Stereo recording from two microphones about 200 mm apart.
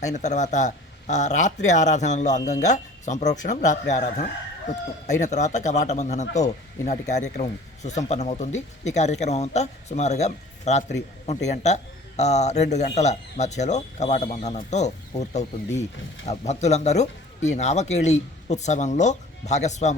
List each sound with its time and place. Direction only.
0.1 s speech: 35° left (ahead or behind)
5.2 s speech: 35° left (ahead or behind)